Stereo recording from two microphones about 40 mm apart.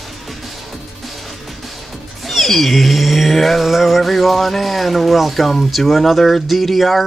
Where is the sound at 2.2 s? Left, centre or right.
Centre.